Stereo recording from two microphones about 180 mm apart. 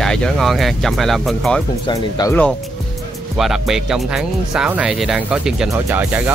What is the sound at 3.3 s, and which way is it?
Speech, centre (ahead or behind).